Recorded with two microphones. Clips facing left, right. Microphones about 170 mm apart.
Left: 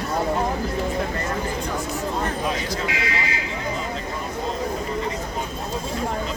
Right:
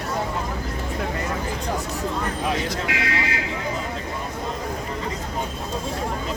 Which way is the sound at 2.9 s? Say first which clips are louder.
Right 1 dB; 65° right (ahead or behind).